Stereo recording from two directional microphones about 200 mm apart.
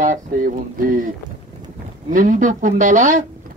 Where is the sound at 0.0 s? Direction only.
40° right (ahead or behind).